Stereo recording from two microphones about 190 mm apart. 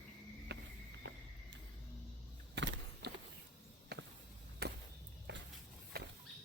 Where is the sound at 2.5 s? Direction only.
65° right (ahead or behind).